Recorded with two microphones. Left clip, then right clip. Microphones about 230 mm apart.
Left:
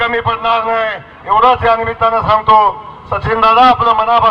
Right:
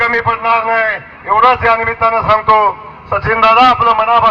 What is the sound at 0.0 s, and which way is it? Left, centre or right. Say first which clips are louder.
A man's voice: right 1 dB; left.